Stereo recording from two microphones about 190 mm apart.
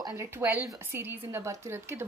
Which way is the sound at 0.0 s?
15° right (ahead or behind).